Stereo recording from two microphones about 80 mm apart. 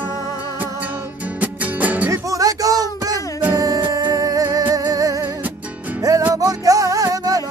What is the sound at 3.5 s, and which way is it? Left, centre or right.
Music, right.